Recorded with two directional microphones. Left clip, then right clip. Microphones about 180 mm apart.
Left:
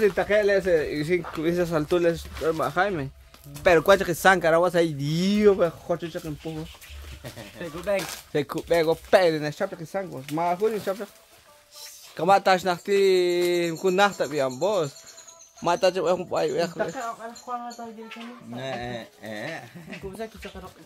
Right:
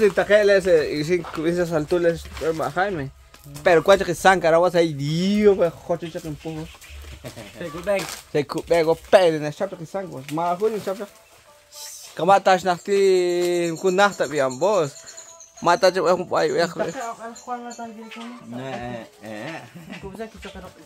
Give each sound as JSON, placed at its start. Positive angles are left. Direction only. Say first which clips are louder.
{"t": 0.0, "sound": "speech", "louder": "right 5 dB", "side_deg": -5}
{"t": 1.3, "sound": "speech", "louder": "right 3 dB", "side_deg": 5}
{"t": 12.2, "sound": "a man's voice", "louder": "right 3 dB", "side_deg": 0}
{"t": 18.6, "sound": "speech", "louder": "right 1 dB", "side_deg": 30}